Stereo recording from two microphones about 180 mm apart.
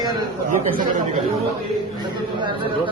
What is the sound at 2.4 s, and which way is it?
Speech, 25° right (ahead or behind).